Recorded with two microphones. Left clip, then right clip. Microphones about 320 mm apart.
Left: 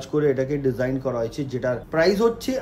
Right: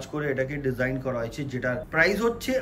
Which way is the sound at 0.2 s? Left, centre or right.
Centre.